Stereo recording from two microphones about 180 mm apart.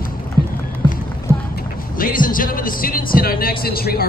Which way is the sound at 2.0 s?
50° left (ahead or behind).